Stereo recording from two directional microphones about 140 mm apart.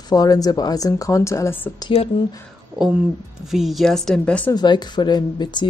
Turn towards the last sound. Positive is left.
turn(degrees=30)  # may be behind; listen again after turning